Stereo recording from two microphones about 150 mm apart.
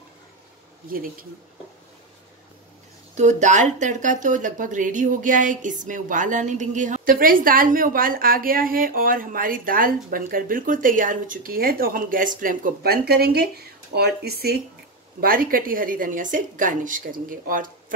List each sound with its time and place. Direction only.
0.8 s speech: 70° right (ahead or behind)
3.2 s speech: 50° right (ahead or behind); by 14.6 s 90° right
15.1 s speech: 70° right (ahead or behind)